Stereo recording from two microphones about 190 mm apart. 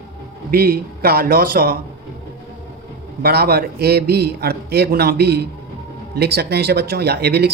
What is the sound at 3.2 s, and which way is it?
Speech, 55° right (ahead or behind).